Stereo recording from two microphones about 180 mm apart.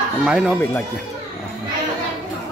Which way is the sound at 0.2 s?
5° right (ahead or behind).